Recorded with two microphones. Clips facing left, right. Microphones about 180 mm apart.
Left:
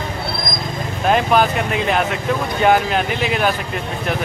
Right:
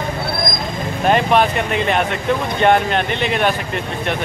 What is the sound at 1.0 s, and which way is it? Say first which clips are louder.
Speech: right 1 dB; centre (ahead or behind).